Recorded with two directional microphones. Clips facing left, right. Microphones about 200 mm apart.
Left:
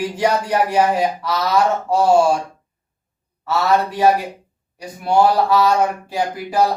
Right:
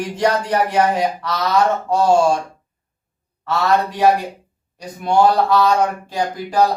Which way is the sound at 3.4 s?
5° left (ahead or behind).